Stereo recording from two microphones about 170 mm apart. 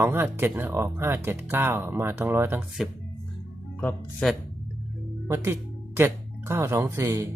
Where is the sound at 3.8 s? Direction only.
5° left (ahead or behind).